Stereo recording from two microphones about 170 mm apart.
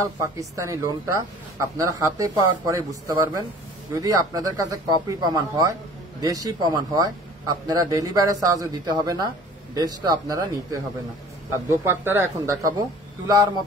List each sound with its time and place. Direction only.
0.0 s speech: 20° right (ahead or behind)